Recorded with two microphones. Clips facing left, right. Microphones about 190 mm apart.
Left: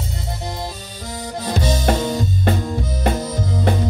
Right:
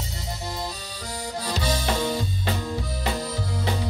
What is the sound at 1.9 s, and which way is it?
Music, 50° left (ahead or behind).